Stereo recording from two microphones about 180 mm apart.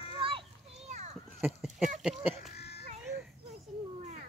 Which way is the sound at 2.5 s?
65° left (ahead or behind).